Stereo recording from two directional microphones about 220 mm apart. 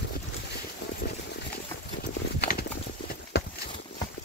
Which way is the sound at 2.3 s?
45° left (ahead or behind).